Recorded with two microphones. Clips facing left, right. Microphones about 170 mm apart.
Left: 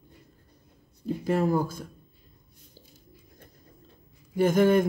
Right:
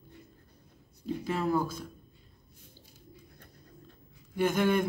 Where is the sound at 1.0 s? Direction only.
50° left (ahead or behind).